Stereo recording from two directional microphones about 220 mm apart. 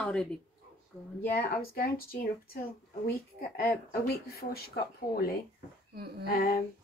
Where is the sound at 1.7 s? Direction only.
40° left (ahead or behind).